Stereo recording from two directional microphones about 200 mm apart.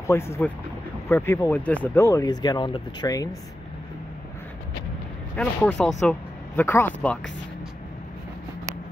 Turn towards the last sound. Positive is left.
turn(degrees=10)  # may be behind; listen again after turning